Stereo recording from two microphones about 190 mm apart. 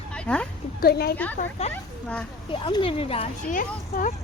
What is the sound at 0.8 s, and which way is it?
Speech, 55° left (ahead or behind).